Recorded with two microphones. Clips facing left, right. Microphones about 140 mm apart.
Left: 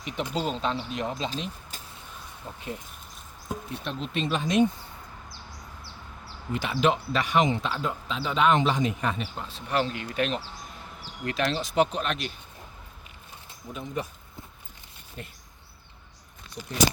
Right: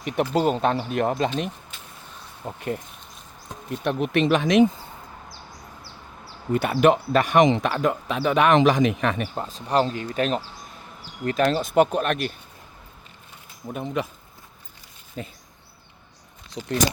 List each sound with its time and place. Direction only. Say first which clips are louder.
0.0 s speech: right 8 dB; 60° right (ahead or behind)
1.7 s a sound: even; 40° left (ahead or behind)
2.6 s speech: right 8 dB; 60° right (ahead or behind); by 4.6 s 85° right
6.5 s speech: right 7 dB; 50° right (ahead or behind)
7.4 s speech: right 7 dB; 80° right
9.2 s speech: right 6 dB; 40° right (ahead or behind)
13.7 s speech: right 6 dB; 80° right